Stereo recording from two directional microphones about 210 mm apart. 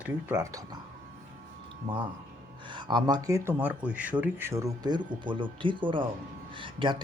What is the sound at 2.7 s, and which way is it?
Speech, 20° right (ahead or behind).